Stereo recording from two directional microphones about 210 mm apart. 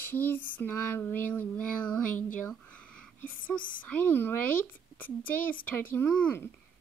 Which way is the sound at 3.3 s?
40° left (ahead or behind).